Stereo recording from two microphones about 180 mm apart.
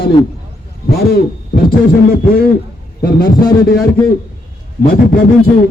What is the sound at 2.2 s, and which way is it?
A man's voice, 55° left (ahead or behind).